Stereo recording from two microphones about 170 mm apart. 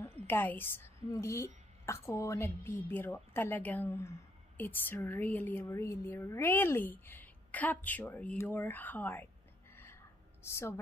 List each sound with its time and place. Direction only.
0.3 s a woman's voice: 10° left (ahead or behind)
10.4 s a woman's voice: 15° left (ahead or behind)